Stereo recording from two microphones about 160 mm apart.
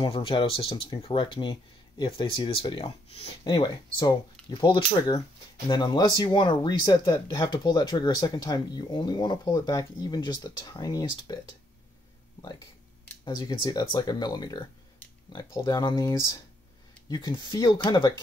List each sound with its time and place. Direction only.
0.0 s speech: 35° left (ahead or behind)
3.4 s speech: 25° left (ahead or behind)
13.2 s speech: 30° left (ahead or behind)